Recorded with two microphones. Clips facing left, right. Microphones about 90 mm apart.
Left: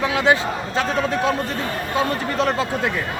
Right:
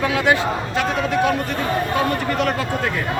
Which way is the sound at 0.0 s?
25° left (ahead or behind).